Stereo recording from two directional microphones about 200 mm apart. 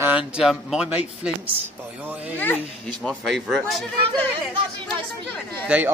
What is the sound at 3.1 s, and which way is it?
Speech, centre (ahead or behind).